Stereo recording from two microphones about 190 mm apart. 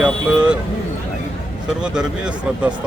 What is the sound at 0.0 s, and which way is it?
Vehicle, 5° right (ahead or behind).